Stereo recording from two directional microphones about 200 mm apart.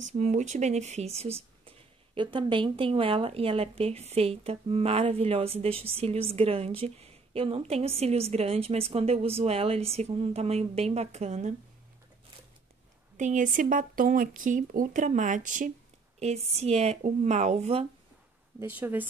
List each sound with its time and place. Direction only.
0.0 s speech: 35° right (ahead or behind)
13.2 s speech: 40° right (ahead or behind)
18.6 s speech: 10° right (ahead or behind)